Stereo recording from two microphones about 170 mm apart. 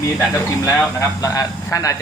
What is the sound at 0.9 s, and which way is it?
Speech, 20° left (ahead or behind).